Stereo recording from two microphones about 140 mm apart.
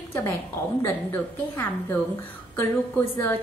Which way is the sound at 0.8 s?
15° left (ahead or behind).